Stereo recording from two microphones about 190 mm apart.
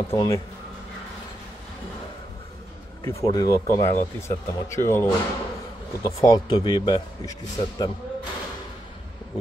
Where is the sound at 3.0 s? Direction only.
20° left (ahead or behind).